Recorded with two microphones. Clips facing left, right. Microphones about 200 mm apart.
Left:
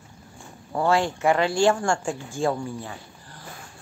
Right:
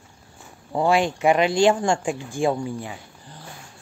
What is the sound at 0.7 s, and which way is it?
Speech, 15° right (ahead or behind).